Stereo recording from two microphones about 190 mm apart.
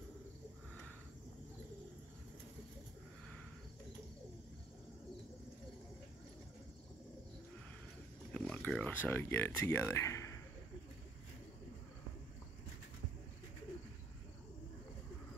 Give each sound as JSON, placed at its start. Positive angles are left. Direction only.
{"t": 8.3, "sound": "speech", "side_deg": 5}